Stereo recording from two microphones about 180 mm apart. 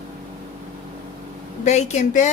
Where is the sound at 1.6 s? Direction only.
40° left (ahead or behind).